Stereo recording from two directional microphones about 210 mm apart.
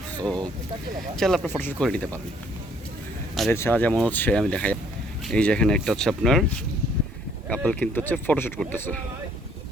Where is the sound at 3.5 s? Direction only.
10° left (ahead or behind).